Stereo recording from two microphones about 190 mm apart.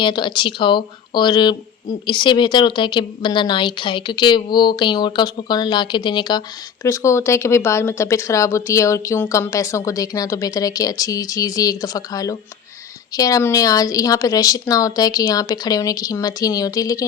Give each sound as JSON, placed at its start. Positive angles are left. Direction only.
{"t": 0.0, "sound": "speech", "side_deg": 25}